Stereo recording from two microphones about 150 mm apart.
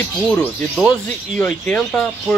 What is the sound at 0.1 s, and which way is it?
Speech, 5° left (ahead or behind).